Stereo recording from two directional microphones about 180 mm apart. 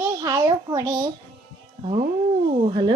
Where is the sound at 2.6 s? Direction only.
25° right (ahead or behind).